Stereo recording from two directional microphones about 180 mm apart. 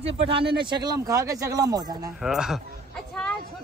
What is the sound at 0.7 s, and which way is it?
Speech, 25° right (ahead or behind).